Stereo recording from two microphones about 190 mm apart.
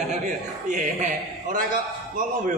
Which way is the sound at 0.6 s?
40° right (ahead or behind).